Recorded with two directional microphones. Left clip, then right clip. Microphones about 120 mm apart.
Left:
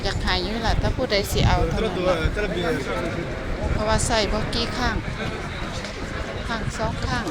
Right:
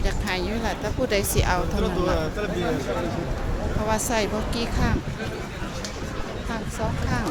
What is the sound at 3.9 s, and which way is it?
Speech, 25° right (ahead or behind).